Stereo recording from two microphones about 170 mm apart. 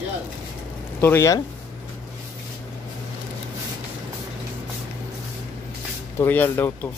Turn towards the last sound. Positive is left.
turn(degrees=10)  # may be behind; listen again after turning